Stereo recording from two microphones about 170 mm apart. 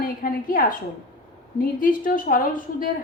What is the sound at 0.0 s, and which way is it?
Speech, 55° left (ahead or behind).